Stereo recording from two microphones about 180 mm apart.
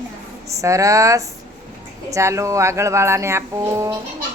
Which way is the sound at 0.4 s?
15° right (ahead or behind).